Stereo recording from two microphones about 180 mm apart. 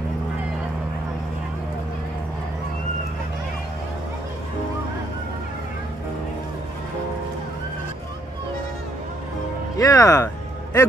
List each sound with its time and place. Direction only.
9.8 s music: 20° left (ahead or behind)